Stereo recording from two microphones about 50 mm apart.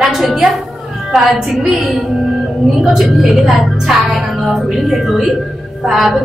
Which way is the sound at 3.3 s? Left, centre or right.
Centre.